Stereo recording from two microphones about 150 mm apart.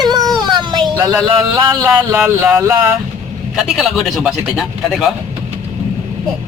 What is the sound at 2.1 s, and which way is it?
Speech, 15° right (ahead or behind).